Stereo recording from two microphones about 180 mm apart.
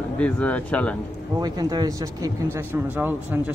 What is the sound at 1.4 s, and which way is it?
Speech, 20° right (ahead or behind).